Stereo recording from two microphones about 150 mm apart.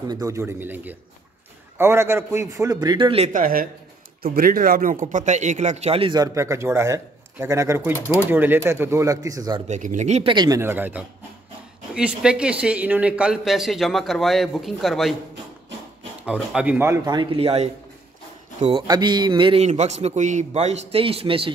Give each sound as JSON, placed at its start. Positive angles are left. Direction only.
{"t": 0.1, "sound": "a man's voice", "side_deg": -20}
{"t": 3.3, "sound": "speech", "side_deg": -70}
{"t": 4.2, "sound": "speech", "side_deg": -90}
{"t": 5.1, "sound": "a man's voice", "side_deg": -55}
{"t": 9.7, "sound": "a man's voice", "side_deg": -55}
{"t": 10.3, "sound": "a man's voice", "side_deg": -30}
{"t": 10.6, "sound": "a man's voice", "side_deg": -15}
{"t": 16.3, "sound": "speech", "side_deg": -10}
{"t": 17.0, "sound": "a man's voice", "side_deg": -30}
{"t": 19.6, "sound": "a man's voice", "side_deg": -50}